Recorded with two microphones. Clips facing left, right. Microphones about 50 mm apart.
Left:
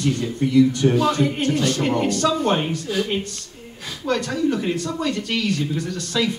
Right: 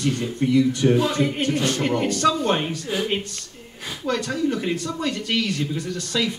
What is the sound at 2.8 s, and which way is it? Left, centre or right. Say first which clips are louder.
Speech: left 2 dB; right.